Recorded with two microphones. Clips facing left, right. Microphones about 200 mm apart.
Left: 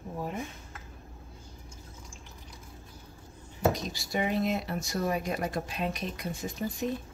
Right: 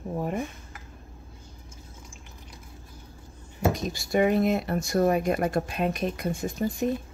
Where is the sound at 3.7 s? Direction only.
50° right (ahead or behind).